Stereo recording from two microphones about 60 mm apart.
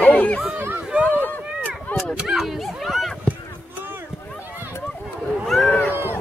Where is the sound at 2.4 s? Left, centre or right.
Centre.